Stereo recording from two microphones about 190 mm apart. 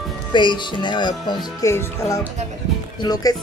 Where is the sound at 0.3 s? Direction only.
25° left (ahead or behind).